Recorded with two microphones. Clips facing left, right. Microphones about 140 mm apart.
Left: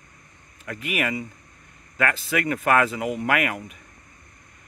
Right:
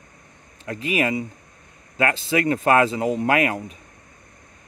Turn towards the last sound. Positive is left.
turn(degrees=-25)  # may be behind; listen again after turning